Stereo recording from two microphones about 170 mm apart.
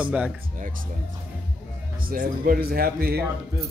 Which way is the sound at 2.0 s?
55° right (ahead or behind).